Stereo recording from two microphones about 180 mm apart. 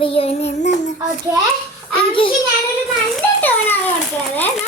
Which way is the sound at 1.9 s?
30° left (ahead or behind).